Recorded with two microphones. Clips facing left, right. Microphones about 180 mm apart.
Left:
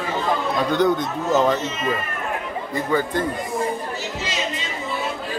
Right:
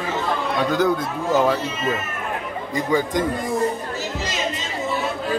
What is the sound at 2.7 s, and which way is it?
Speech, 15° right (ahead or behind).